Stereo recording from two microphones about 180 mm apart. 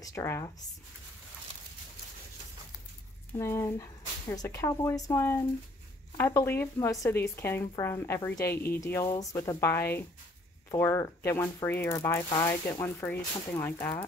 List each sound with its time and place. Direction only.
0.0 s speech: 15° left (ahead or behind)
3.3 s speech: 15° left (ahead or behind)